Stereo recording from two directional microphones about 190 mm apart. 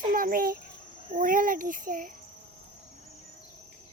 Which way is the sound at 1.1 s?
45° right (ahead or behind).